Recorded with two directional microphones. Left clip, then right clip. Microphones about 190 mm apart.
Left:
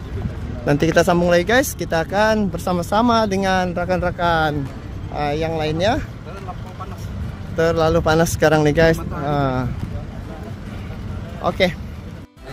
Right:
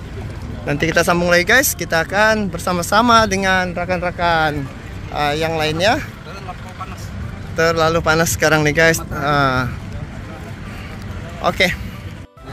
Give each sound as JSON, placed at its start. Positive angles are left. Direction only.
{"t": 0.7, "sound": "speech", "side_deg": 30}
{"t": 1.0, "sound": "speech", "side_deg": 20}
{"t": 5.1, "sound": "speech", "side_deg": 0}
{"t": 7.5, "sound": "speech", "side_deg": 20}
{"t": 9.2, "sound": "speech", "side_deg": 10}
{"t": 11.4, "sound": "speech", "side_deg": 5}